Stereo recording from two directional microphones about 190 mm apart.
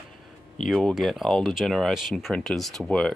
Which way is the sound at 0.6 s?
Centre (ahead or behind).